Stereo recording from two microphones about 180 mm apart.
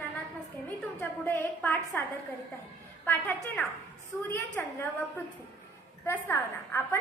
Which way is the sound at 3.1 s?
10° left (ahead or behind).